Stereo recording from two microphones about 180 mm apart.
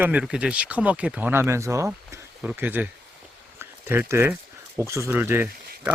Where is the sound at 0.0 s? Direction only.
5° right (ahead or behind).